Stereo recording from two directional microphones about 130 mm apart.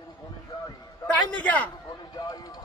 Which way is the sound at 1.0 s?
10° left (ahead or behind).